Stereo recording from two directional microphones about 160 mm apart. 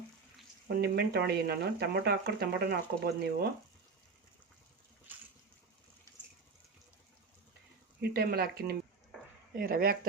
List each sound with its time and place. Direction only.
0.8 s speech: 90° right
8.1 s speech: 75° right (ahead or behind)
9.6 s speech: 65° right (ahead or behind)